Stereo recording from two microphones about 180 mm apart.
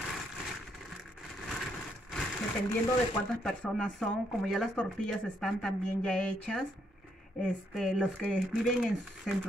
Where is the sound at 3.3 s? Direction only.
5° left (ahead or behind).